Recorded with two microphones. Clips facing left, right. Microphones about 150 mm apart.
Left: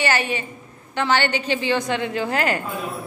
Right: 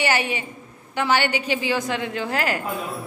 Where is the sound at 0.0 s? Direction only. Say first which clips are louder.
Left 1 dB; 15° right (ahead or behind).